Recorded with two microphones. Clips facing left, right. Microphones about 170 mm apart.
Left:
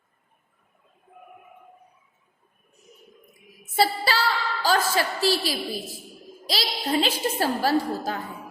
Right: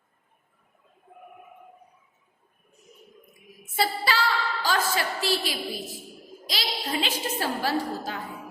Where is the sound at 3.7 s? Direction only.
35° left (ahead or behind).